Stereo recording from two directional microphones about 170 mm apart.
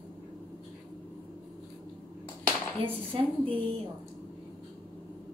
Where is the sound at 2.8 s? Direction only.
30° right (ahead or behind).